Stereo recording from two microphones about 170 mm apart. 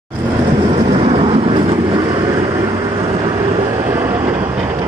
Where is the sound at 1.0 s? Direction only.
35° right (ahead or behind).